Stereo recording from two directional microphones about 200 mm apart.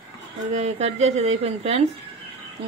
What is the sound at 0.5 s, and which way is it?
A woman's voice, 35° right (ahead or behind).